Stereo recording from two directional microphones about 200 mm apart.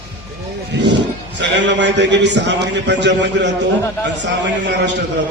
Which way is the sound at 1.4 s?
60° right (ahead or behind).